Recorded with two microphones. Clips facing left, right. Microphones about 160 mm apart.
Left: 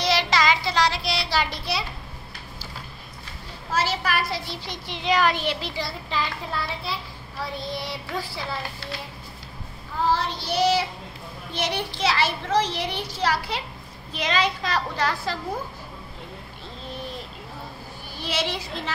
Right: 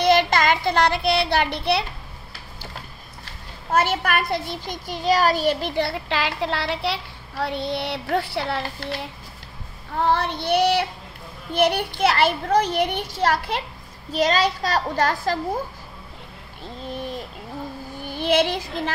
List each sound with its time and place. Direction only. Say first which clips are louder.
0.0 s child singing: right 5 dB; 55° right (ahead or behind)
3.7 s a child's voice: right 4 dB; 55° right (ahead or behind)
9.9 s a child's voice: right 3 dB; 60° right (ahead or behind)
14.1 s a child's voice: right 5 dB; 40° right (ahead or behind)
18.1 s a child's voice: right 8 dB; 55° right (ahead or behind)